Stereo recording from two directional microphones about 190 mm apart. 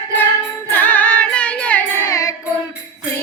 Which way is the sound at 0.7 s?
10° left (ahead or behind).